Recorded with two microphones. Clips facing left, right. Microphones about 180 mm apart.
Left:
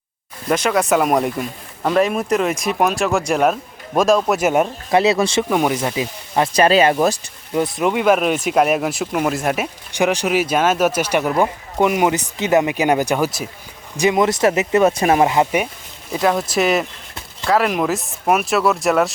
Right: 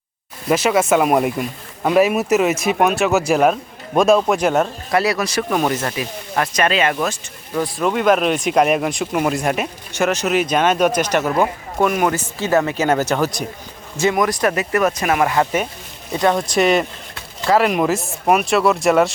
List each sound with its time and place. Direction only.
0.4 s speech: 5° right (ahead or behind)
4.9 s speech: 25° left (ahead or behind)
5.5 s speech: 15° left (ahead or behind)
6.0 s speech: 25° left (ahead or behind)
7.5 s speech: 15° left (ahead or behind); by 9.6 s centre (ahead or behind)
9.9 s speech: 15° left (ahead or behind)
16.1 s speech: 5° left (ahead or behind)